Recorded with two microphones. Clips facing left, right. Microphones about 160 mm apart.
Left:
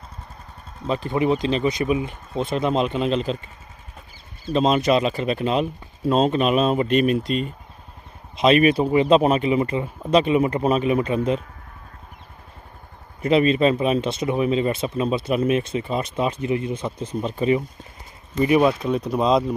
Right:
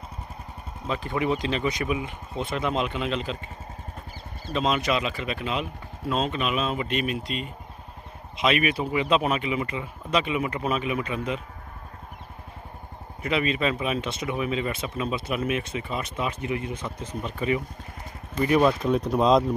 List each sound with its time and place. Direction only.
0.8 s speech: 30° left (ahead or behind)
4.5 s speech: 35° left (ahead or behind)
13.2 s speech: 35° left (ahead or behind)
18.4 s speech: 10° left (ahead or behind)